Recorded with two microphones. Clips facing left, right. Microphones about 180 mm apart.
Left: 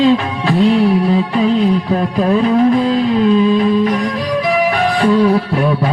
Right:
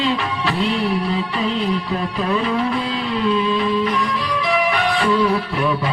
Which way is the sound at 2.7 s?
45° left (ahead or behind).